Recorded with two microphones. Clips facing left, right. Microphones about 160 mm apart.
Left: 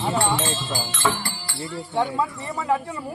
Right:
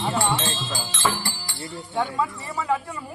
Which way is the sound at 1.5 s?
25° left (ahead or behind).